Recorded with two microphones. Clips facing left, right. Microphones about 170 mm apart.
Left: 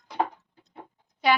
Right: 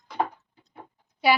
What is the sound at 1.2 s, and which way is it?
Speech, 5° right (ahead or behind).